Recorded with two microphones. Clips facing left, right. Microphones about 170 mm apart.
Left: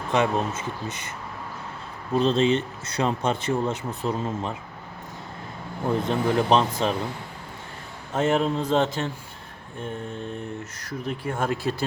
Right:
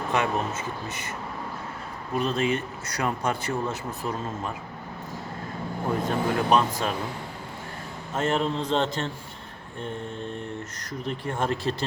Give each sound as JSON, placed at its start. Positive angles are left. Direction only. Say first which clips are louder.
{"t": 0.1, "sound": "speech", "louder": "left 4 dB", "side_deg": 20}
{"t": 2.1, "sound": "speech", "louder": "left 5 dB", "side_deg": 30}
{"t": 6.1, "sound": "speech", "louder": "left 2 dB", "side_deg": 20}
{"t": 8.1, "sound": "speech", "louder": "left 3 dB", "side_deg": 10}
{"t": 10.8, "sound": "speech", "louder": "left 2 dB", "side_deg": 5}